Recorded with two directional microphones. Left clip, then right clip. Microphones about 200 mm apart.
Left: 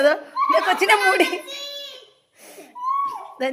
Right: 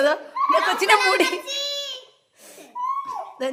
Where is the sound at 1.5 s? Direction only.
30° right (ahead or behind).